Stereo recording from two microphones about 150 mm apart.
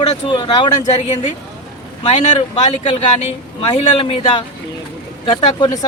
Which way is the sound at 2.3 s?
45° left (ahead or behind).